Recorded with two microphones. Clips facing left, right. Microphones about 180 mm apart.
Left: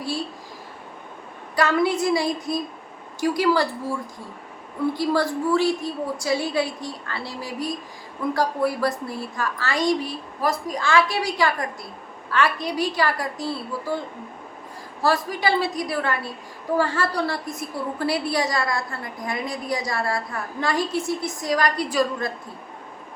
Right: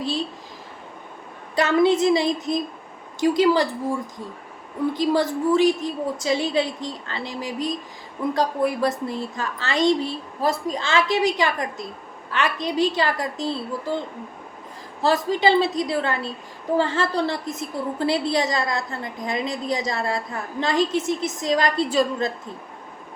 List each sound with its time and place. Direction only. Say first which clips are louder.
0.0 s a sound: right 2 dB; 20° right (ahead or behind)
1.5 s a woman's voice: right 3 dB; 25° right (ahead or behind)
15.0 s a woman's voice: right 3 dB; 20° right (ahead or behind)